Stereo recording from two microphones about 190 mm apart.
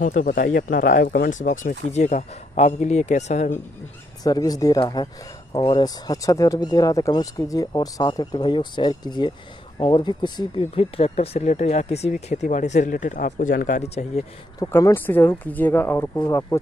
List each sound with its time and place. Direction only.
0.0 s speech: 45° left (ahead or behind)
4.2 s speech: 20° left (ahead or behind); by 14.2 s 35° left (ahead or behind)
14.6 s speech: 15° left (ahead or behind)